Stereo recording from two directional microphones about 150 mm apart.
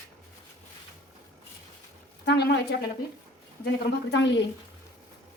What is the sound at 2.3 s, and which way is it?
Speech, 90° left.